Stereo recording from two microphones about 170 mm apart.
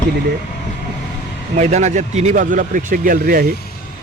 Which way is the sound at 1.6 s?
40° right (ahead or behind).